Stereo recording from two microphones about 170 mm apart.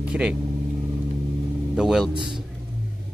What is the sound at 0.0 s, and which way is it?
Speech, 5° right (ahead or behind).